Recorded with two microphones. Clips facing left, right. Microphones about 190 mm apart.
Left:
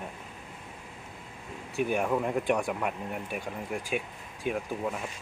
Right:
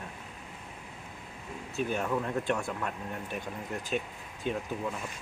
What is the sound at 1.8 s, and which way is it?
Speech, 15° left (ahead or behind).